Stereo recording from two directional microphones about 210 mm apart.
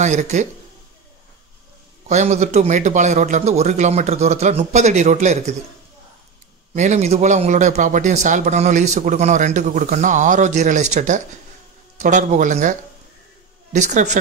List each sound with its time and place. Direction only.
0.0 s speech: 35° right (ahead or behind)
2.0 s speech: 35° right (ahead or behind)
6.7 s speech: 35° right (ahead or behind)
13.7 s speech: 35° right (ahead or behind)